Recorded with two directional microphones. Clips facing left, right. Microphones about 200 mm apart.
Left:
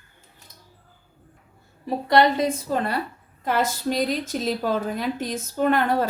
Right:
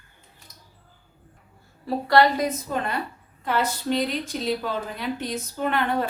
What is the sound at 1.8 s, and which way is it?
A woman's voice, 20° left (ahead or behind).